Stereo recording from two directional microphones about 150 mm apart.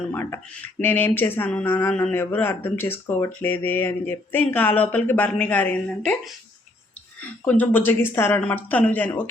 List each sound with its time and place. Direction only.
0.1 s speech: 10° left (ahead or behind)